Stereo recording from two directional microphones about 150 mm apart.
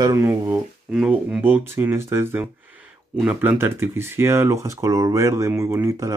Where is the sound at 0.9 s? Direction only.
5° right (ahead or behind).